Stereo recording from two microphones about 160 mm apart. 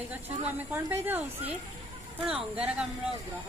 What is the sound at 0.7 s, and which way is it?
A woman's voice, 15° right (ahead or behind).